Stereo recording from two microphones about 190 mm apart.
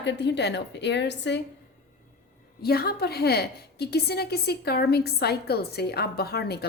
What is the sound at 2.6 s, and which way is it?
A woman's voice, 55° left (ahead or behind).